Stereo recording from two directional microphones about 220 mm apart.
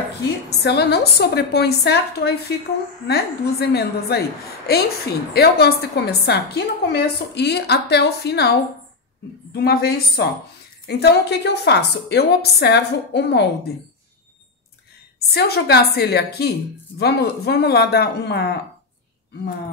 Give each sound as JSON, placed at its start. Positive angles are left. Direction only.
{"t": 0.5, "sound": "a woman's voice", "side_deg": 50}
{"t": 15.1, "sound": "a woman's voice", "side_deg": 45}